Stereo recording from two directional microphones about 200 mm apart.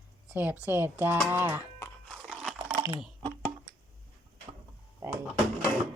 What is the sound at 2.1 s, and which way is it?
Crunch, centre (ahead or behind).